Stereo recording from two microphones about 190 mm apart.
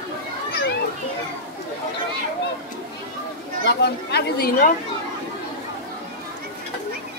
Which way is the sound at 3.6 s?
60° left (ahead or behind).